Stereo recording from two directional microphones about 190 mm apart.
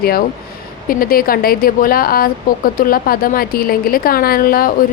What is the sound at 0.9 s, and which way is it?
A woman's voice, 50° left (ahead or behind).